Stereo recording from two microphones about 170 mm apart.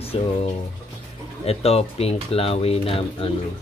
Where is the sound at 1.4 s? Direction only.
35° left (ahead or behind).